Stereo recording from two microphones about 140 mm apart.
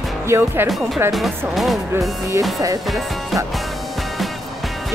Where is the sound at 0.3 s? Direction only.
15° right (ahead or behind).